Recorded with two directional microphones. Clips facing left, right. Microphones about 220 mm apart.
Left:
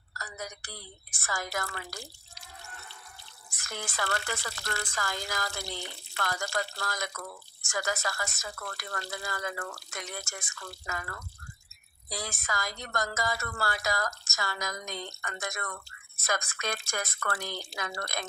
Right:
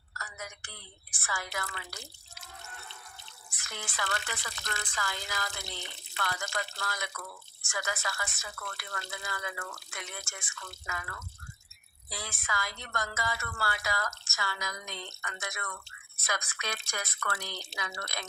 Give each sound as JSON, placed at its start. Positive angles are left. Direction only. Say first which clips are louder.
{"t": 0.1, "sound": "a woman's voice", "louder": "left 4 dB", "side_deg": 35}
{"t": 3.6, "sound": "speech", "louder": "left 3 dB", "side_deg": 45}